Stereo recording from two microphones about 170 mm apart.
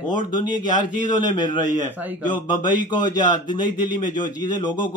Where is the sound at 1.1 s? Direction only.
25° left (ahead or behind).